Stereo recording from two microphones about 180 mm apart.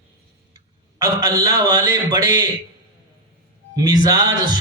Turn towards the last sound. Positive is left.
turn(degrees=-20)  # may be behind; listen again after turning